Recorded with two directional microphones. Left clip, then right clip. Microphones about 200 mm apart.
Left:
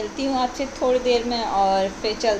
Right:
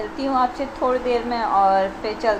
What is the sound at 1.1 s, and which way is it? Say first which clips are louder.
Speech: left 1 dB; 10° right (ahead or behind).